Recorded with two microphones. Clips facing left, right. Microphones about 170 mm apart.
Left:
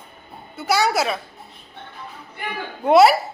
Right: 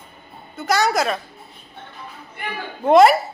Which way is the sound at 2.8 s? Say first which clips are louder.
Right 1 dB; 5° left (ahead or behind).